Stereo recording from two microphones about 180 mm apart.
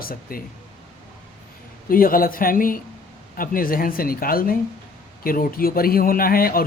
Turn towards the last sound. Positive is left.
turn(degrees=55)  # may be behind; listen again after turning